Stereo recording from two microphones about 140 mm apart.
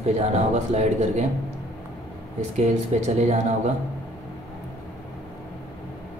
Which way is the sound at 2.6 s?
55° right (ahead or behind).